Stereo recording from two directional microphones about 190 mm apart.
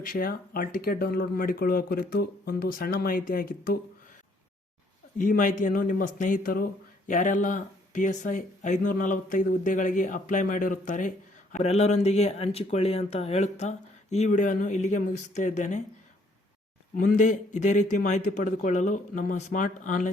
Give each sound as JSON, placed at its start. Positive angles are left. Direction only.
{"t": 0.0, "sound": "speech", "side_deg": 50}
{"t": 5.1, "sound": "speech", "side_deg": 45}
{"t": 17.0, "sound": "speech", "side_deg": 40}